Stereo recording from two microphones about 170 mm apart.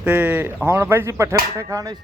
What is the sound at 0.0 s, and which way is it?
Speech, 10° right (ahead or behind).